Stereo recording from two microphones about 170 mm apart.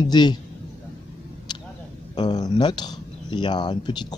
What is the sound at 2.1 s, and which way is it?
Speech, 25° left (ahead or behind).